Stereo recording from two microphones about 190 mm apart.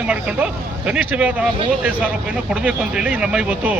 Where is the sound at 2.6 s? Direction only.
5° right (ahead or behind).